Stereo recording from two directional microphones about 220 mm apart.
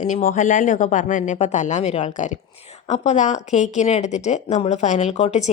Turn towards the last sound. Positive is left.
turn(degrees=30)  # may be behind; listen again after turning